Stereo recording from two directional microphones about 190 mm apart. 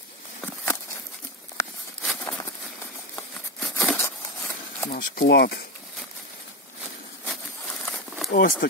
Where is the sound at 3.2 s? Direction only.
10° left (ahead or behind).